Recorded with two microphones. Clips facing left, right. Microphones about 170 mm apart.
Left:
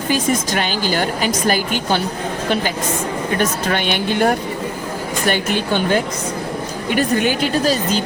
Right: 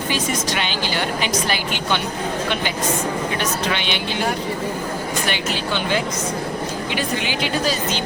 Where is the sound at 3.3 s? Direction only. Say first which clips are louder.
Left 4 dB; 45° left (ahead or behind).